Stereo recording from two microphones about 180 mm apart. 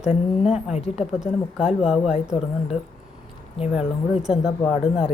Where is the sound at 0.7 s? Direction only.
35° left (ahead or behind).